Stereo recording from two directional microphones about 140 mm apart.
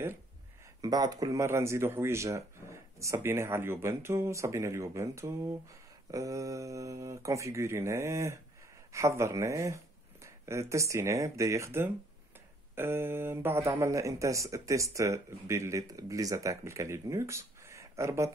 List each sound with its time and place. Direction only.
0.7 s speech: 30° right (ahead or behind)